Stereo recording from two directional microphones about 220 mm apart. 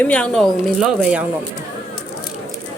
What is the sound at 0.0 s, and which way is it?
A woman's voice, 5° left (ahead or behind).